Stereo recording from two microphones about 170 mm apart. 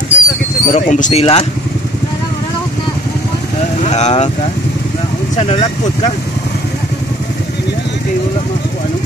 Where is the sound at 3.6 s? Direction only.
40° left (ahead or behind).